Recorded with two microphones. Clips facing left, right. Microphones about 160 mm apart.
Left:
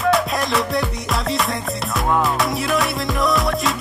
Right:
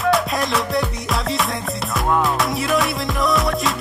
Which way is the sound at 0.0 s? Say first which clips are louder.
Even; centre (ahead or behind).